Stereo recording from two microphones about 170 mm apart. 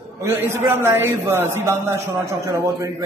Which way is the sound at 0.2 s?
15° right (ahead or behind).